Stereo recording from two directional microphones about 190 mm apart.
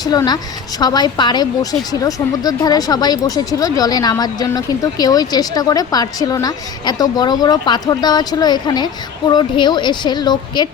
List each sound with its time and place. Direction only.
0.0 s speech: 20° left (ahead or behind)